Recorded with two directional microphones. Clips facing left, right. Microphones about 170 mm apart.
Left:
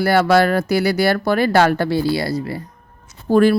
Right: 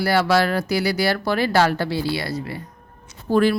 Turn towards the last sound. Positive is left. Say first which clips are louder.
# left 4 dB
turn(degrees=45)  # may be behind; listen again after turning